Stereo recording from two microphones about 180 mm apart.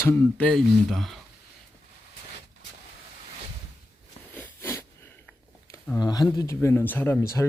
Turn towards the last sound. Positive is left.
turn(degrees=10)  # may be behind; listen again after turning